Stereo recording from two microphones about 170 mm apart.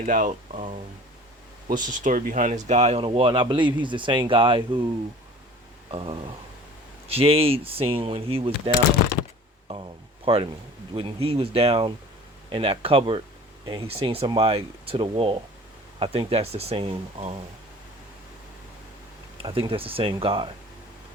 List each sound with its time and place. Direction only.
0.0 s speech: 50° right (ahead or behind); by 4.9 s 30° right (ahead or behind)
5.9 s speech: 30° right (ahead or behind)
10.2 s speech: 30° right (ahead or behind)
19.4 s speech: 30° right (ahead or behind)